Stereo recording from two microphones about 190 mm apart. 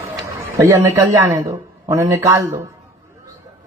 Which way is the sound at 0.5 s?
15° right (ahead or behind).